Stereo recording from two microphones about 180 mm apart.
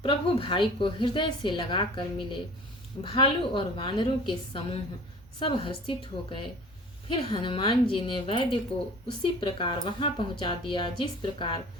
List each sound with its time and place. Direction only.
0.0 s speech: 30° left (ahead or behind)